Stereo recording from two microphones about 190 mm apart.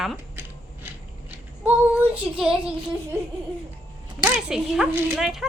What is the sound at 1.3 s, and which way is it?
Female singing, 10° right (ahead or behind).